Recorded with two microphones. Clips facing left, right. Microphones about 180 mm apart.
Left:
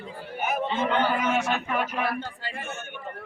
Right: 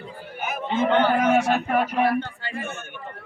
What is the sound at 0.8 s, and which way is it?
Speech, 55° right (ahead or behind).